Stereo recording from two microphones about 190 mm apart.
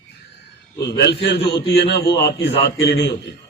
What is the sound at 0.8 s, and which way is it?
Speech, 60° left (ahead or behind).